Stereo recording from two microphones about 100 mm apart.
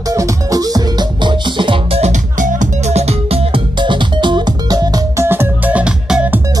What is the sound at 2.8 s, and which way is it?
Music, 90° right.